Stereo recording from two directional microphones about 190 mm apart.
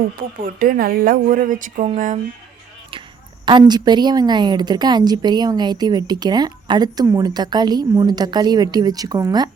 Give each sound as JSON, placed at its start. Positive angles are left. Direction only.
{"t": 0.2, "sound": "a woman's voice", "side_deg": -50}
{"t": 2.9, "sound": "a sound", "side_deg": -25}
{"t": 3.4, "sound": "speech", "side_deg": -25}